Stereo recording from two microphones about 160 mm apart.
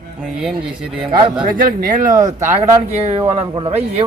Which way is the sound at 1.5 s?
60° right (ahead or behind).